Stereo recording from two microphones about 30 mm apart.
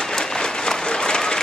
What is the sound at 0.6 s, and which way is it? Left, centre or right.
Applause, left.